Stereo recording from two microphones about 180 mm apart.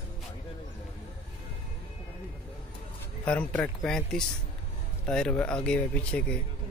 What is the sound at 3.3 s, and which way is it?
Speech, 5° left (ahead or behind).